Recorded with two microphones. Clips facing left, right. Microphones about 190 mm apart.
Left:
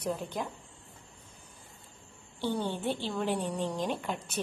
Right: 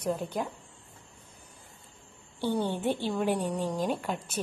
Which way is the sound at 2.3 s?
15° right (ahead or behind).